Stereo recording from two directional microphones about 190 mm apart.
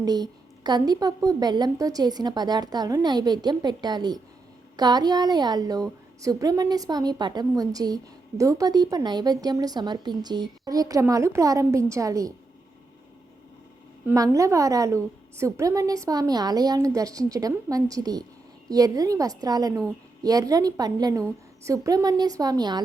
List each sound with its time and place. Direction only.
0.0 s a woman's voice: 20° right (ahead or behind)
14.1 s a woman's voice: 15° right (ahead or behind)